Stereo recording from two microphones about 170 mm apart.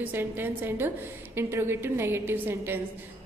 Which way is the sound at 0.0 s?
10° right (ahead or behind).